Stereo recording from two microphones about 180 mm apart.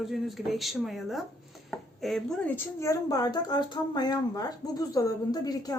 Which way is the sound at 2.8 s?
20° left (ahead or behind).